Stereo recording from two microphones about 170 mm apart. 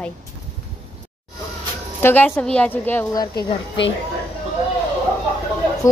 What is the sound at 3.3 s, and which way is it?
Speech, 90° left.